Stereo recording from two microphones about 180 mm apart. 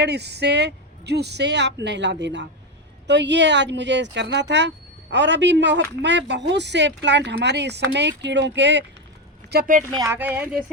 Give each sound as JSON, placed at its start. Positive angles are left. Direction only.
{"t": 0.0, "sound": "speech", "side_deg": -70}
{"t": 9.5, "sound": "speech", "side_deg": -55}
{"t": 10.0, "sound": "speech", "side_deg": -15}